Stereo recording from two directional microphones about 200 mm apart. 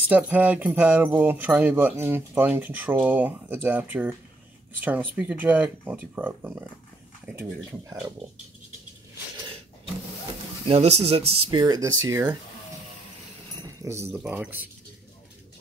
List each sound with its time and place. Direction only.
0.1 s speech: 10° right (ahead or behind)
10.7 s speech: 30° right (ahead or behind)
11.5 s speech: 20° right (ahead or behind)
13.6 s speech: 15° right (ahead or behind)